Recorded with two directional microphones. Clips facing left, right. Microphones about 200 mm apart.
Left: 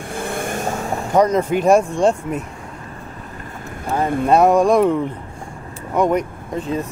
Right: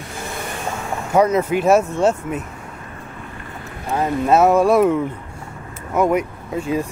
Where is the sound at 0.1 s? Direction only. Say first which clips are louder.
Left 6 dB; 55° left (ahead or behind).